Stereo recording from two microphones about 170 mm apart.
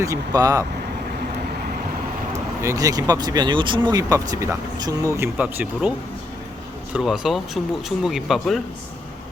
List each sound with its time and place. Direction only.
0.0 s speech: 20° right (ahead or behind)
2.6 s speech: 20° right (ahead or behind)
6.9 s speech: 5° right (ahead or behind)